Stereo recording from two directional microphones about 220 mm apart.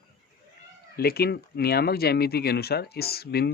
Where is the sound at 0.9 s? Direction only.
45° left (ahead or behind).